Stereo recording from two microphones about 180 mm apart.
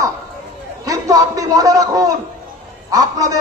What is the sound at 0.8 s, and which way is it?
A man's voice, 20° right (ahead or behind).